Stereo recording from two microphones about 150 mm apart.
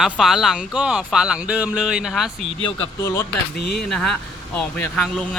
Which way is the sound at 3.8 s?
5° left (ahead or behind).